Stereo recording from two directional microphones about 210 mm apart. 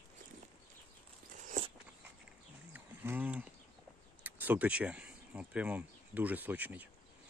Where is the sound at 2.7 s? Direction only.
10° right (ahead or behind).